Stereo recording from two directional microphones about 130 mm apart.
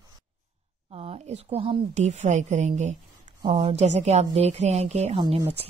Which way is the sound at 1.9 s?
65° right (ahead or behind).